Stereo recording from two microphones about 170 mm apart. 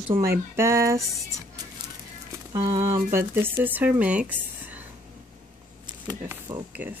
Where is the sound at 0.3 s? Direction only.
15° right (ahead or behind).